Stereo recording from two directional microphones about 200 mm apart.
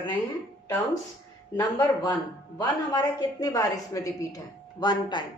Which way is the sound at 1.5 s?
25° left (ahead or behind).